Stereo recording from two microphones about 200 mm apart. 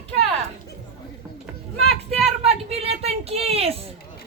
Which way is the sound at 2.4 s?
30° right (ahead or behind).